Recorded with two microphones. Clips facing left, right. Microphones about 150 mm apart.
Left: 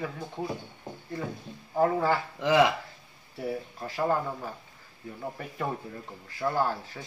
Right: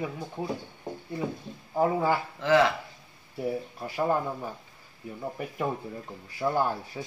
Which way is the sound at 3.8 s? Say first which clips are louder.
Right 1 dB; 10° right (ahead or behind).